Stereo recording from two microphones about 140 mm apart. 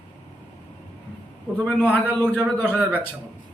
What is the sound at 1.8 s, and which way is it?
Speech, 15° left (ahead or behind).